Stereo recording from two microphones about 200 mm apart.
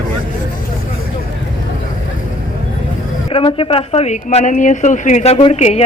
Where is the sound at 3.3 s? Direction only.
25° left (ahead or behind).